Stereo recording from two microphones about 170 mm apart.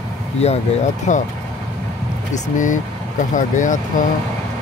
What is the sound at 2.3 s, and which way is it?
Speech, 50° left (ahead or behind).